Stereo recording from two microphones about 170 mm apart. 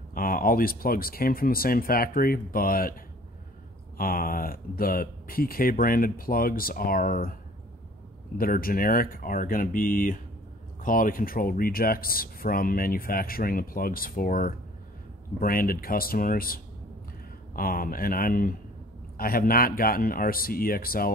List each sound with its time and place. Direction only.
0.1 s speech: 55° left (ahead or behind)
4.0 s speech: 55° left (ahead or behind)
8.4 s speech: 60° left (ahead or behind)